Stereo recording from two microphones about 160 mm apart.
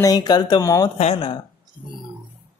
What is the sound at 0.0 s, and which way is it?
Speech, 25° left (ahead or behind).